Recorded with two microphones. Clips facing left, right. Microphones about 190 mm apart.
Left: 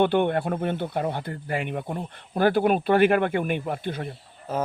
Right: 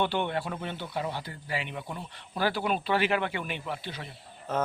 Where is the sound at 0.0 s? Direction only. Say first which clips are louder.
Left 8 dB; 50° left (ahead or behind).